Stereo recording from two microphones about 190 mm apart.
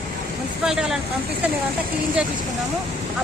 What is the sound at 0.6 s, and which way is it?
Speech, 5° right (ahead or behind).